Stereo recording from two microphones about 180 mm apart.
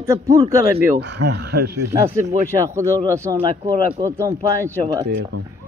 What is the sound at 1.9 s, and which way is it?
Speech, 15° right (ahead or behind).